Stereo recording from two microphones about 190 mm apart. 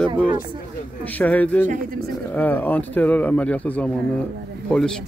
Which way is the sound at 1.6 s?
40° right (ahead or behind).